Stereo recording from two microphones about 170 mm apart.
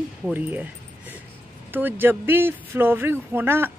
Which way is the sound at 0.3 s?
10° right (ahead or behind).